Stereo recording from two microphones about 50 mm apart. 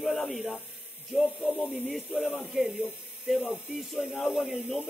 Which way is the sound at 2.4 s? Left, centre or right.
Centre.